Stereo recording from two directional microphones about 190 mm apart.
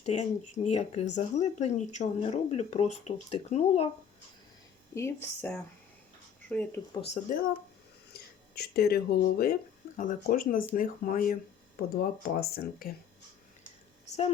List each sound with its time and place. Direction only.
0.0 s speech: 35° left (ahead or behind)
4.9 s speech: 15° left (ahead or behind)
7.2 s speech: 40° left (ahead or behind)
8.5 s speech: 55° left (ahead or behind)
10.0 s speech: 45° left (ahead or behind)